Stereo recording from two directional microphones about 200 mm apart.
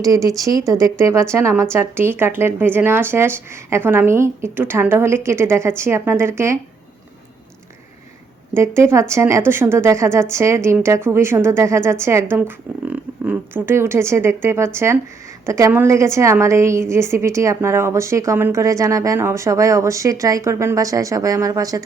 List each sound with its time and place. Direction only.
0.0 s speech: 15° right (ahead or behind)
8.5 s speech: 15° right (ahead or behind)